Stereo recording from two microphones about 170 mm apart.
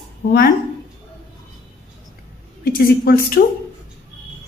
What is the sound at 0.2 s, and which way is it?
Speech, 90° left.